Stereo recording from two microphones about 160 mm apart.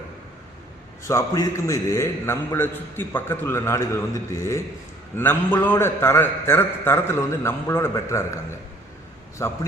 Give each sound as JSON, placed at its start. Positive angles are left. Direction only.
{"t": 1.0, "sound": "a man's voice", "side_deg": 20}
{"t": 9.4, "sound": "a man's voice", "side_deg": 20}